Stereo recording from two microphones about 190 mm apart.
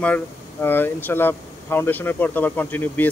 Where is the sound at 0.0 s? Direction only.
10° left (ahead or behind).